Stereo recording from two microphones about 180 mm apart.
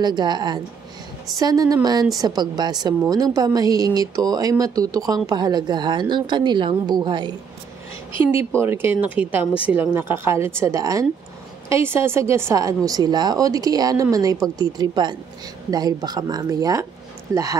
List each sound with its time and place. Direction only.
0.0 s speech: 25° right (ahead or behind)
8.5 s a woman's voice: 10° right (ahead or behind)